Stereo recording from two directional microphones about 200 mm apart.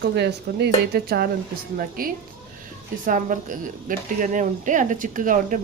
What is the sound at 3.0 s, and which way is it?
Speech, 40° right (ahead or behind).